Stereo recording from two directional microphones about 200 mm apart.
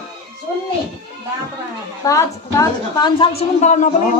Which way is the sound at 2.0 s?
15° left (ahead or behind).